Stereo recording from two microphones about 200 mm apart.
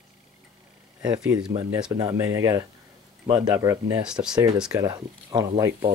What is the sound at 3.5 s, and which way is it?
Speech, 15° right (ahead or behind).